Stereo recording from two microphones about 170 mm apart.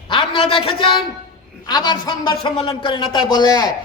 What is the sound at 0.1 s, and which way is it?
A woman's voice, 30° left (ahead or behind).